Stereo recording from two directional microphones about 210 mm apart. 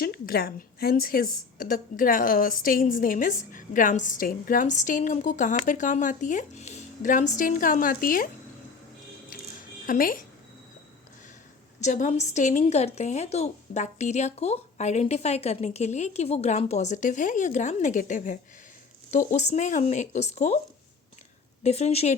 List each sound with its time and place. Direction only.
0.0 s a woman's voice: 45° left (ahead or behind)
9.8 s a woman's voice: 40° left (ahead or behind)
11.8 s a woman's voice: 35° left (ahead or behind)
21.6 s a woman's voice: 30° left (ahead or behind)